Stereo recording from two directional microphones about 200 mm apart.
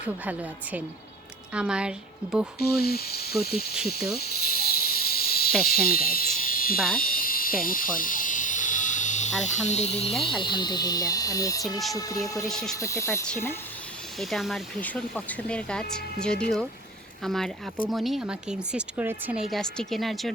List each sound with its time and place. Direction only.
0.0 s a woman's voice: 10° right (ahead or behind)
2.6 s speech: 50° left (ahead or behind)
3.8 s snake: 50° left (ahead or behind)
6.7 s speech: centre (ahead or behind)
7.0 s a sound: 45° left (ahead or behind)
10.4 s speech: 20° left (ahead or behind)
12.5 s speech: centre (ahead or behind)
12.7 s speech: 15° left (ahead or behind)
14.2 s speech: centre (ahead or behind)